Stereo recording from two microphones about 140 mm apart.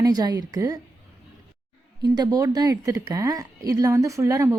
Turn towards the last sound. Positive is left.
turn(degrees=-20)  # may be behind; listen again after turning